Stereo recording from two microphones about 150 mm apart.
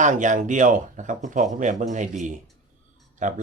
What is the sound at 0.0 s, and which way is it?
Speech, 55° right (ahead or behind).